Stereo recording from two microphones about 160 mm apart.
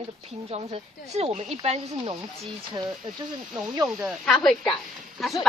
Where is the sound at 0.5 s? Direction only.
40° right (ahead or behind).